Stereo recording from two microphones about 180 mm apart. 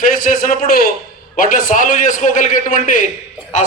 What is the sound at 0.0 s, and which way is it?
A man's voice, 50° left (ahead or behind).